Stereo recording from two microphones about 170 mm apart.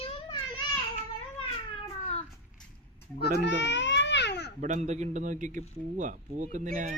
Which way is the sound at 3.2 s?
90° left.